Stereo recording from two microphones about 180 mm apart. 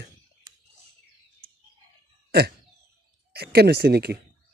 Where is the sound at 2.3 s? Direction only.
60° right (ahead or behind).